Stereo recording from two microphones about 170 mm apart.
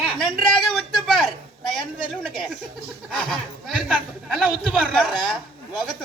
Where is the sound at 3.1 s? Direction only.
Centre (ahead or behind).